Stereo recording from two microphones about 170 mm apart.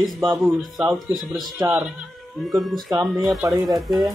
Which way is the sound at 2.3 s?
Centre (ahead or behind).